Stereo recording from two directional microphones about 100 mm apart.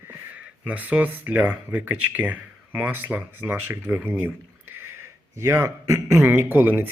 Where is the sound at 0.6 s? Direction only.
15° right (ahead or behind).